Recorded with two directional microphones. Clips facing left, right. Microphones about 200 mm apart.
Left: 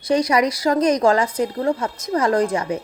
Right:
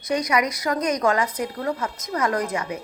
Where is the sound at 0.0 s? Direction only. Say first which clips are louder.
Left 5 dB; 30° left (ahead or behind).